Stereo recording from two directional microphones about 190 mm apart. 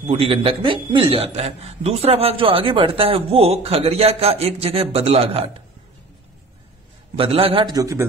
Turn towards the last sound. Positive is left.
turn(degrees=-20)  # may be behind; listen again after turning